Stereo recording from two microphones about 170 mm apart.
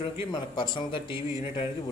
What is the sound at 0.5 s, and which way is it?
Speech, 25° left (ahead or behind).